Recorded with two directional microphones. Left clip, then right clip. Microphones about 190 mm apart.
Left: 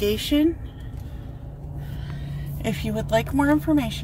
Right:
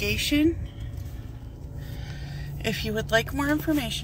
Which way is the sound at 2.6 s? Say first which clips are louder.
Even; 15° left (ahead or behind).